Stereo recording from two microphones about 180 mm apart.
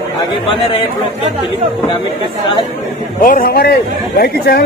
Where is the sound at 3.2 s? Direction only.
50° left (ahead or behind).